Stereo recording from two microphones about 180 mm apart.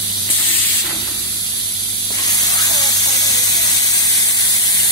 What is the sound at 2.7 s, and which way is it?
Spray, 20° left (ahead or behind).